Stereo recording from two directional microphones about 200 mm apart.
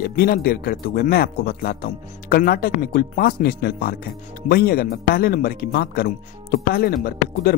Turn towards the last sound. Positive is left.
turn(degrees=50)  # may be behind; listen again after turning